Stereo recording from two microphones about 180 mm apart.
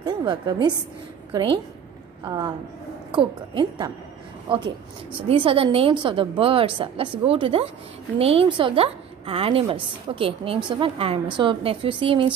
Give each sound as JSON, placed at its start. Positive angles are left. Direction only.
{"t": 0.0, "sound": "a woman's voice", "side_deg": -25}